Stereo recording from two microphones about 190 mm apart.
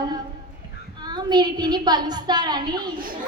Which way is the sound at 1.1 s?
20° right (ahead or behind).